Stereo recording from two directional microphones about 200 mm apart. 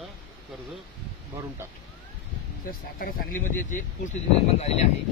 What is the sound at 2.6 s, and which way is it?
Speech, 45° left (ahead or behind).